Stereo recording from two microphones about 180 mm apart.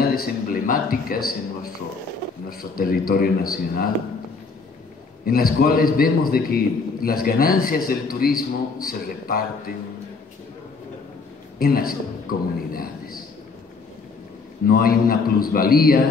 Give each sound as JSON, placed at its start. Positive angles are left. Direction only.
{"t": 0.0, "sound": "speech", "side_deg": 55}
{"t": 2.5, "sound": "a man's voice", "side_deg": 55}
{"t": 5.2, "sound": "a man's voice", "side_deg": 55}
{"t": 11.5, "sound": "a man's voice", "side_deg": 55}
{"t": 14.7, "sound": "a man's voice", "side_deg": 55}